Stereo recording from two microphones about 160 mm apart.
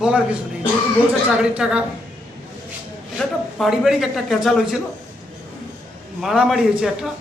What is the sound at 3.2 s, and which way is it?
A man's voice, centre (ahead or behind).